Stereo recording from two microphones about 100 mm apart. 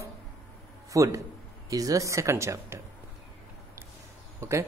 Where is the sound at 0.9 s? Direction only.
35° right (ahead or behind).